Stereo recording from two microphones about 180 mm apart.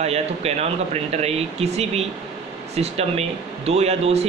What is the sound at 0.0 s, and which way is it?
Speech, 35° right (ahead or behind).